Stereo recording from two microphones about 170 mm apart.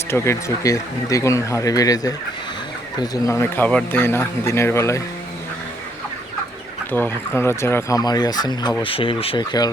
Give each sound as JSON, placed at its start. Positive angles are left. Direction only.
{"t": 0.1, "sound": "speech", "side_deg": 15}
{"t": 6.9, "sound": "speech", "side_deg": 10}